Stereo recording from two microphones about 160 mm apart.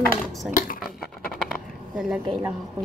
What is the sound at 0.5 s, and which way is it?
Squish, 60° left (ahead or behind).